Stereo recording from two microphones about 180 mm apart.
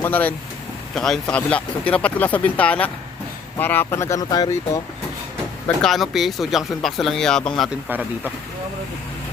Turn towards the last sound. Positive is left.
turn(degrees=-5)  # may be behind; listen again after turning